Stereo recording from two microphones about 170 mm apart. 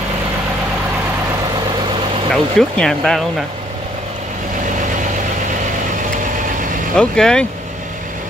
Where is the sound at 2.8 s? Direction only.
5° left (ahead or behind).